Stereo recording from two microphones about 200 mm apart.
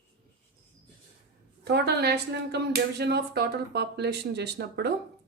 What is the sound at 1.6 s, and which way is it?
A woman's voice, 55° right (ahead or behind).